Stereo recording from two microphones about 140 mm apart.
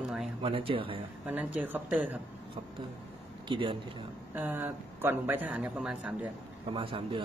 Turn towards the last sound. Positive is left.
turn(degrees=-40)  # may be behind; listen again after turning